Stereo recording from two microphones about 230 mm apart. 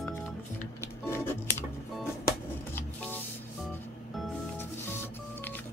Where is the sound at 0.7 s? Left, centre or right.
Centre.